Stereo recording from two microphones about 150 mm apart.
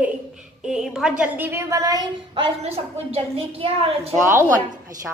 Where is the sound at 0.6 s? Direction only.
5° right (ahead or behind); by 2.0 s 20° right (ahead or behind).